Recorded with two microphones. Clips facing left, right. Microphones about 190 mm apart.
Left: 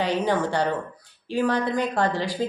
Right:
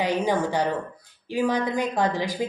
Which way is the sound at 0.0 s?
15° right (ahead or behind).